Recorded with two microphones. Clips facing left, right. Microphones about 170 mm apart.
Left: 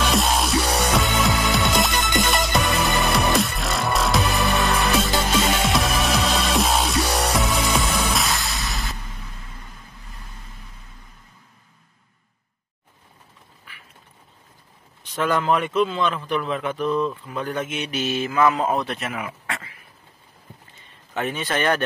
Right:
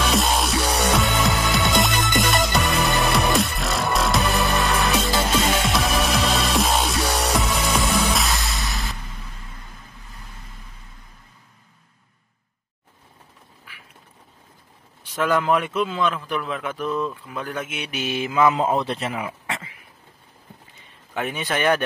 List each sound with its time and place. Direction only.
0.0 s music: centre (ahead or behind)
15.0 s a man's voice: 10° right (ahead or behind)
21.1 s a man's voice: 10° right (ahead or behind)